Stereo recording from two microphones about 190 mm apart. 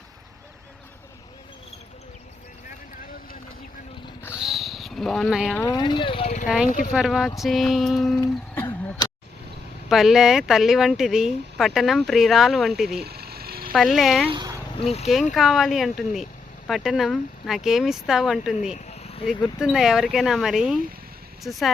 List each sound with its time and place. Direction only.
4.4 s a sound: centre (ahead or behind)
5.5 s speech: 20° left (ahead or behind); by 6.9 s 45° left (ahead or behind)
6.9 s speech: centre (ahead or behind)
8.2 s a sound: 15° left (ahead or behind)
9.9 s speech: centre (ahead or behind)
13.0 s a sound: 55° right (ahead or behind)
13.7 s speech: centre (ahead or behind)
14.3 s speech: 25° right (ahead or behind)
14.8 s speech: 35° left (ahead or behind)
15.3 s speech: centre (ahead or behind)
18.9 s a sound: 35° left (ahead or behind)
19.5 s speech: 5° right (ahead or behind)